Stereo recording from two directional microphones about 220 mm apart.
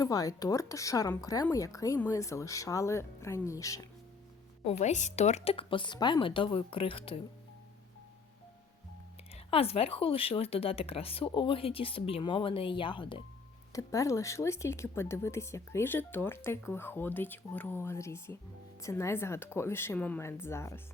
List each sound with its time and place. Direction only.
0.0 s speech: 15° left (ahead or behind)
4.8 s a woman's voice: 35° left (ahead or behind)
9.3 s a woman's voice: 25° left (ahead or behind)